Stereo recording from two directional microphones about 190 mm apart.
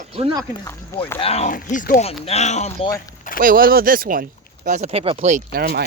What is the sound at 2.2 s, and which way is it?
Speech, 35° left (ahead or behind).